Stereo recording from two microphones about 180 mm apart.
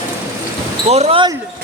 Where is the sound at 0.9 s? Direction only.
35° right (ahead or behind).